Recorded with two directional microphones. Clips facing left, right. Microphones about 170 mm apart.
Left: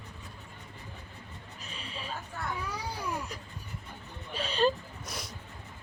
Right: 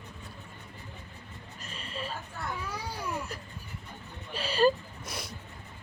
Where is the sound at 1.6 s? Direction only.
Centre (ahead or behind).